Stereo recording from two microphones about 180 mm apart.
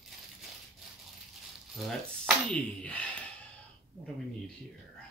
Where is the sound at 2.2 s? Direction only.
5° left (ahead or behind).